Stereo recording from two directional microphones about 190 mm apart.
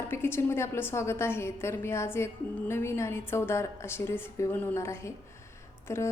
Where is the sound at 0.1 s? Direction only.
10° left (ahead or behind).